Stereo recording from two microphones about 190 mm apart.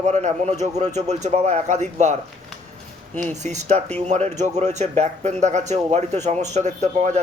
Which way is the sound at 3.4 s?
40° right (ahead or behind).